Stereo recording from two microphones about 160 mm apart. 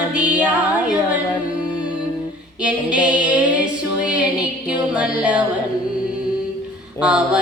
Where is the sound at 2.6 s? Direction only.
5° right (ahead or behind).